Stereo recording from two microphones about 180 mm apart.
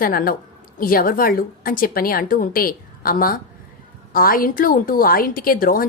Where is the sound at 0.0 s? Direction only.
55° left (ahead or behind).